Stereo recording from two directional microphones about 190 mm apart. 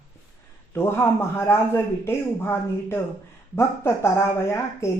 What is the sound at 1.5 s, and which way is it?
Speech, 15° left (ahead or behind).